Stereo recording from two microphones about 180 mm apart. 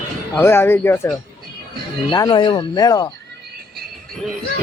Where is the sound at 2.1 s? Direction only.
20° left (ahead or behind).